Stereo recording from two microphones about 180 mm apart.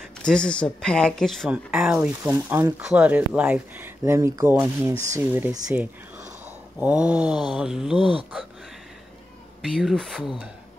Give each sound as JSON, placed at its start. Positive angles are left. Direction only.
{"t": 0.2, "sound": "speech", "side_deg": 5}
{"t": 6.8, "sound": "mantra", "side_deg": -5}
{"t": 8.0, "sound": "speech", "side_deg": -30}
{"t": 9.6, "sound": "mantra", "side_deg": 0}